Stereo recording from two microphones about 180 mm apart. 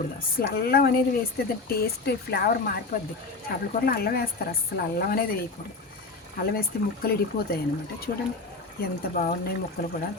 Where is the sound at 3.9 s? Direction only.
60° left (ahead or behind).